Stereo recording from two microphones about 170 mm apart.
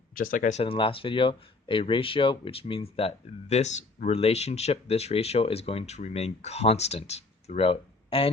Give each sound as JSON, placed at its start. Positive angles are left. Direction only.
{"t": 0.1, "sound": "speech", "side_deg": 55}
{"t": 0.6, "sound": "speech", "side_deg": 35}